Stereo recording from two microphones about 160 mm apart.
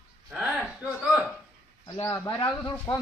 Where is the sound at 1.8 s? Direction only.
25° left (ahead or behind).